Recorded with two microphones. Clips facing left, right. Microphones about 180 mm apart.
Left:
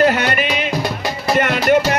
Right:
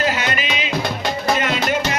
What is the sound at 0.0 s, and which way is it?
Music, 60° left (ahead or behind).